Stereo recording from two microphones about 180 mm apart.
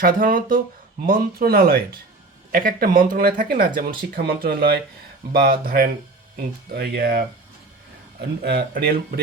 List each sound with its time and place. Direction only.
0.0 s speech: 50° right (ahead or behind)
8.4 s speech: 60° right (ahead or behind)